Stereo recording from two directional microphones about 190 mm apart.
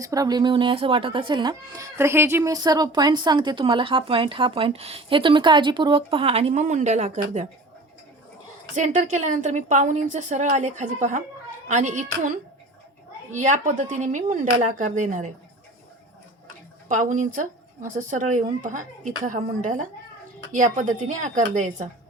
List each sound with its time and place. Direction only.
0.0 s speech: 20° right (ahead or behind); by 7.1 s 40° right (ahead or behind)
8.7 s a woman's voice: 40° right (ahead or behind)
13.3 s a woman's voice: 40° right (ahead or behind)
16.9 s a woman's voice: 40° right (ahead or behind)